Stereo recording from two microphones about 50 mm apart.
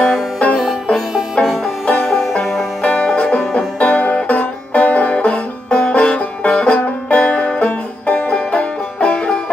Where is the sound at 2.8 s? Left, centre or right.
Left.